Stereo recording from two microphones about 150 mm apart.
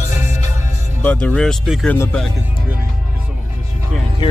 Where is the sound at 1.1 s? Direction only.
10° left (ahead or behind).